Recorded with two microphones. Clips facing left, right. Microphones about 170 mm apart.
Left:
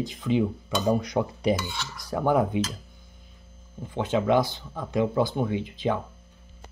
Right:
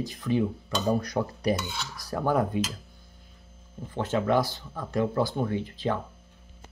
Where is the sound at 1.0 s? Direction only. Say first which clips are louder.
Left 2 dB; 20° left (ahead or behind).